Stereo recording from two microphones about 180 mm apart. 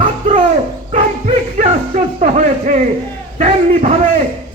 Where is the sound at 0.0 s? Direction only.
40° right (ahead or behind).